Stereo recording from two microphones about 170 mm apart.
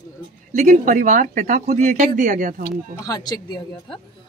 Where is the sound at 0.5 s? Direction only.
50° right (ahead or behind).